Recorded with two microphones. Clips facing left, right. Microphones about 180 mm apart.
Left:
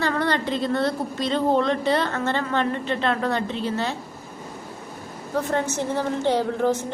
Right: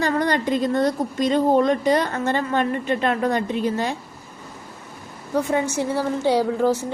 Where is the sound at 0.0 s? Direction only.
15° right (ahead or behind).